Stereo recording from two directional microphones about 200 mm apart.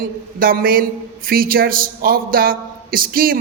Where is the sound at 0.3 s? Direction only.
45° right (ahead or behind).